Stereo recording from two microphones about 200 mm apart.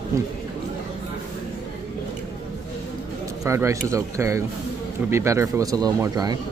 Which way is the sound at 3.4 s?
15° right (ahead or behind).